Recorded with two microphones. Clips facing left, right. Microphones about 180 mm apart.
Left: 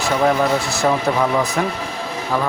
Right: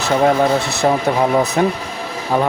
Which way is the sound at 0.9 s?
25° right (ahead or behind).